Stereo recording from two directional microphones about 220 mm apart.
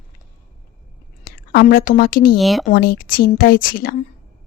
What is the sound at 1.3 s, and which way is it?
Speech, 40° left (ahead or behind).